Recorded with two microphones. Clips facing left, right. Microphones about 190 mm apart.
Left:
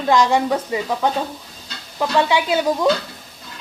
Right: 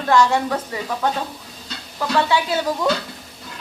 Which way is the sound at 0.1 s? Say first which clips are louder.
Left 1 dB; 15° left (ahead or behind).